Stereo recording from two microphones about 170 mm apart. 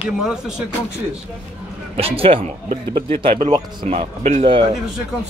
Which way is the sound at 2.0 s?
35° right (ahead or behind).